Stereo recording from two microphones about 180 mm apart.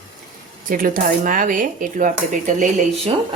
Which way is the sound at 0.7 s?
50° right (ahead or behind).